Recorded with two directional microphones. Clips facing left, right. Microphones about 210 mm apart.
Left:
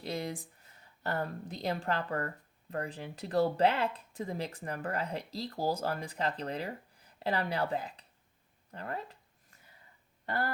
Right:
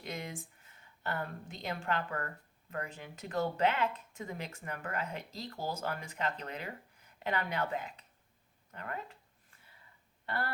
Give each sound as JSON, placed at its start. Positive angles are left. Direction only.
{"t": 0.0, "sound": "speech", "side_deg": 35}
{"t": 10.2, "sound": "speech", "side_deg": 40}